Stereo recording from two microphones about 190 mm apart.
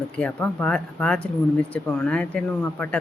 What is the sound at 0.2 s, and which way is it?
Speech, 10° left (ahead or behind).